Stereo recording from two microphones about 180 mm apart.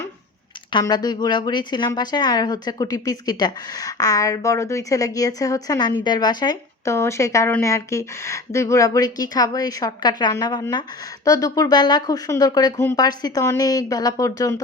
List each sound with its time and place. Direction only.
0.7 s a woman's voice: 25° left (ahead or behind)